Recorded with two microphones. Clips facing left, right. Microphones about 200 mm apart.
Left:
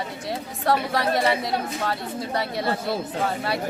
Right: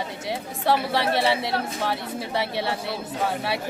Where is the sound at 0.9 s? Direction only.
25° right (ahead or behind).